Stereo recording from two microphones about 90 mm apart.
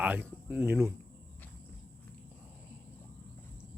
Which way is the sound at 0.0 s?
20° right (ahead or behind).